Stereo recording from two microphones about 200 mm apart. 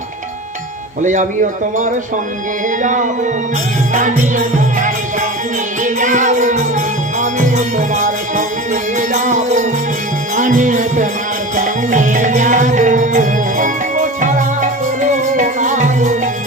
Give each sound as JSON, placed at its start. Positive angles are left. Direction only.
{"t": 2.8, "sound": "music", "side_deg": -40}